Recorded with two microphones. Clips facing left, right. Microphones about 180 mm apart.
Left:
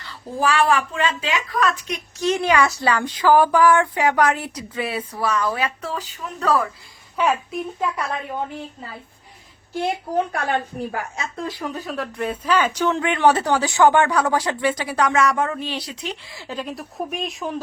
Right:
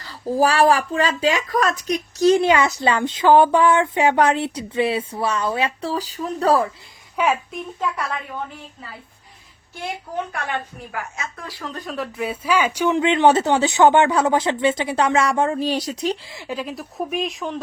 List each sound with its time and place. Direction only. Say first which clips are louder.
0.0 s speech: right 4 dB; 40° right (ahead or behind)
7.2 s speech: even; 5° right (ahead or behind)
10.3 s a woman's voice: left 4 dB; 35° left (ahead or behind)
11.7 s speech: even; centre (ahead or behind)
13.1 s speech: right 2 dB; 25° right (ahead or behind); by 16.3 s 40° right (ahead or behind)
16.3 s speech: right 4 dB; 20° right (ahead or behind)
16.6 s speech: left 1 dB; centre (ahead or behind)